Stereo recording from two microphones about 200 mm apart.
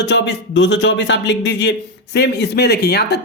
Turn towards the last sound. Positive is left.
turn(degrees=55)  # may be behind; listen again after turning